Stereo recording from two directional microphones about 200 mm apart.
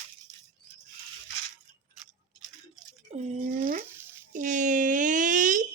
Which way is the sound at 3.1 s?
45° right (ahead or behind).